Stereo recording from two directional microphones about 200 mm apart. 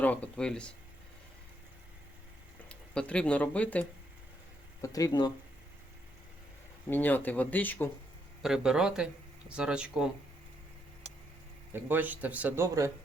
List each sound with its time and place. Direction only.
0.0 s speech: 5° left (ahead or behind)
2.6 s speech: 5° left (ahead or behind)
4.8 s speech: 15° left (ahead or behind)
6.9 s speech: 10° left (ahead or behind)
8.4 s speech: 5° right (ahead or behind)
11.7 s speech: 10° right (ahead or behind)